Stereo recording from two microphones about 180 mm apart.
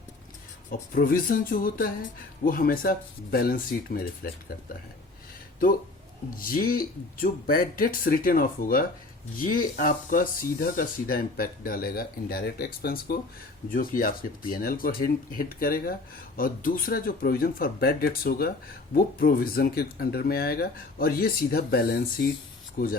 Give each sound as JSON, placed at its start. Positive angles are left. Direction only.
{"t": 0.7, "sound": "speech", "side_deg": 50}
{"t": 6.3, "sound": "speech", "side_deg": 50}